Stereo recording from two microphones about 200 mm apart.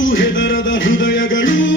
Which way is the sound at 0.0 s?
70° left (ahead or behind).